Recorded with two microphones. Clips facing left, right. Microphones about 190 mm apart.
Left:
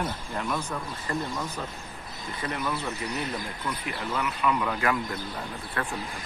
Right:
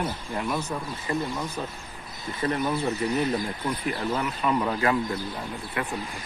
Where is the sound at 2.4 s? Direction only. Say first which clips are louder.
Right 7 dB; 40° right (ahead or behind).